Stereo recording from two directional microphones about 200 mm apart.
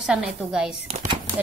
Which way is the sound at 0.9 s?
30° right (ahead or behind).